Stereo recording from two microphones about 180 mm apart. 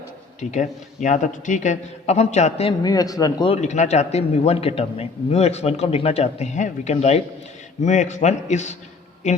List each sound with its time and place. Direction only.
0.3 s a man's voice: 40° left (ahead or behind)
2.8 s speech: 20° left (ahead or behind)
3.5 s a man's voice: 40° left (ahead or behind)